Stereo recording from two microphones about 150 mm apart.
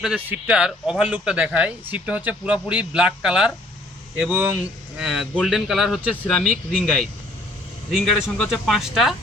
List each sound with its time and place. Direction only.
0.0 s speech: 5° right (ahead or behind)